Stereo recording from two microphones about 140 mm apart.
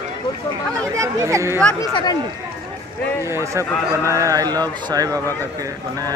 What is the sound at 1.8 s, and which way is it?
Speech, 30° left (ahead or behind).